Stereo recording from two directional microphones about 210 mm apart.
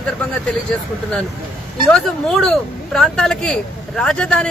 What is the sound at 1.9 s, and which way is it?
Speech, 5° left (ahead or behind).